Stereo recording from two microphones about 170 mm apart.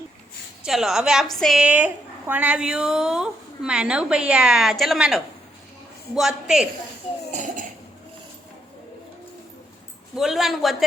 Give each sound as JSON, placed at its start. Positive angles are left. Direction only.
{"t": 0.6, "sound": "a woman's voice", "side_deg": 0}
{"t": 7.1, "sound": "cough", "side_deg": 40}
{"t": 10.2, "sound": "a woman's voice", "side_deg": 0}